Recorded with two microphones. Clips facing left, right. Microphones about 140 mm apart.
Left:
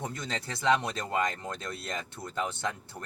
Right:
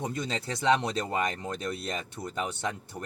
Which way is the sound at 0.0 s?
20° right (ahead or behind).